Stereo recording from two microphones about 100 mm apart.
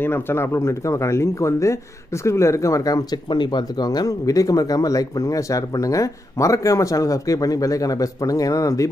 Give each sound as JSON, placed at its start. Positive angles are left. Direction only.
{"t": 0.0, "sound": "speech", "side_deg": 25}
{"t": 3.3, "sound": "speech", "side_deg": 50}